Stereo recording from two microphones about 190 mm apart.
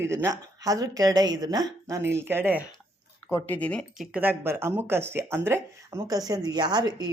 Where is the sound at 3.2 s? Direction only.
10° left (ahead or behind).